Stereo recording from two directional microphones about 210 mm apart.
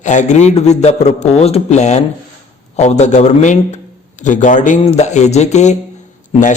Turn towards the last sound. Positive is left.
turn(degrees=35)  # may be behind; listen again after turning